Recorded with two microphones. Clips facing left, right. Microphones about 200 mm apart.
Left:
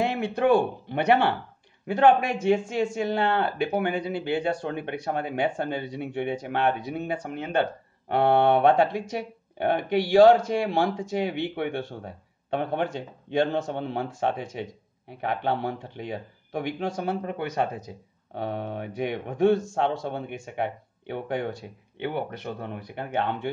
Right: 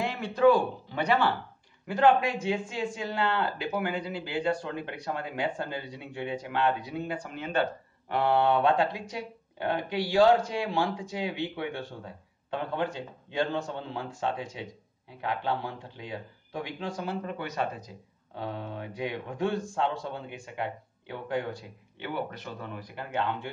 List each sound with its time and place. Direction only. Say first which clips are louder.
0.0 s a man's voice: right 1 dB; 60° left (ahead or behind)
2.5 s speech: left 7 dB; 45° left (ahead or behind)
3.0 s speech: left 3 dB; 60° left (ahead or behind)